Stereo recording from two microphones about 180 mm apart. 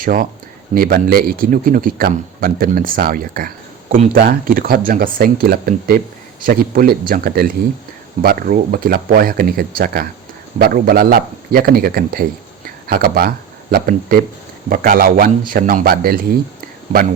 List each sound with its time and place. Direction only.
0.0 s speech: 50° right (ahead or behind)
4.2 s speech: 55° right (ahead or behind)